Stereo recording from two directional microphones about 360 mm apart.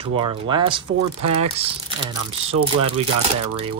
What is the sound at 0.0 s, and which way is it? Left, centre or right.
Speech, centre.